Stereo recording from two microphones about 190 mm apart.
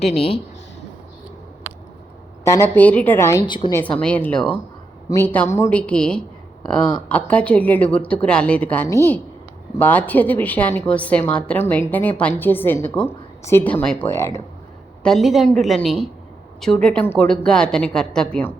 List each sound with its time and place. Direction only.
0.0 s speech: 35° left (ahead or behind)
2.4 s a woman's voice: 15° left (ahead or behind)
3.8 s a woman's voice: 5° left (ahead or behind)
15.0 s a woman's voice: centre (ahead or behind)